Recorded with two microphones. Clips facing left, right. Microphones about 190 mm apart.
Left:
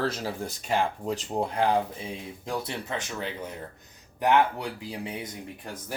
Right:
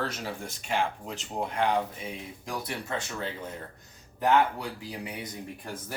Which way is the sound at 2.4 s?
25° left (ahead or behind).